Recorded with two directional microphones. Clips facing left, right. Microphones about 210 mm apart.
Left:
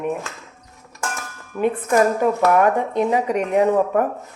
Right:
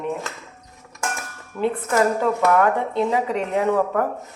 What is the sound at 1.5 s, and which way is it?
A woman's voice, 15° left (ahead or behind).